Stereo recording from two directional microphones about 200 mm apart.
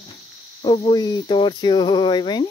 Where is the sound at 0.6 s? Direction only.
20° left (ahead or behind).